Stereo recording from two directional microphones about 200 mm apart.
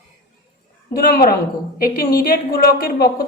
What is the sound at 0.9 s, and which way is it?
A woman's voice, 50° left (ahead or behind).